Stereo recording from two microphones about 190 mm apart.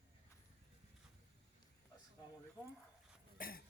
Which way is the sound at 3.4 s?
50° left (ahead or behind).